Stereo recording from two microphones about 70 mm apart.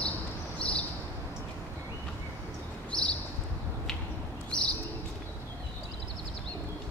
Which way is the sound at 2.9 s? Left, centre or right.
Centre.